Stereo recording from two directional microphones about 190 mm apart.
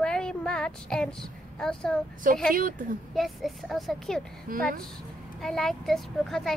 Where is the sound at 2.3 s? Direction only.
45° right (ahead or behind).